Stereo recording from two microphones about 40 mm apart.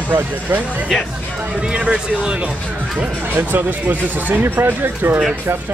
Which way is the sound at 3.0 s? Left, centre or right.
Right.